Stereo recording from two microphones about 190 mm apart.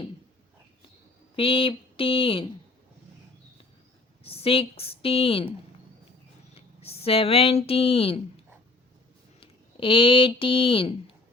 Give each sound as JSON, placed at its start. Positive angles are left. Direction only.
{"t": 1.4, "sound": "speech", "side_deg": 30}
{"t": 4.2, "sound": "speech", "side_deg": 30}
{"t": 6.8, "sound": "speech", "side_deg": 30}
{"t": 9.4, "sound": "speech", "side_deg": 25}